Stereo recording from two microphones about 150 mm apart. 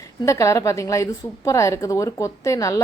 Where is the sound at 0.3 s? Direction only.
20° left (ahead or behind).